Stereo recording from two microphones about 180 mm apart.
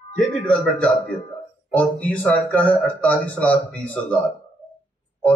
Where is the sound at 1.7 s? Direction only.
10° left (ahead or behind).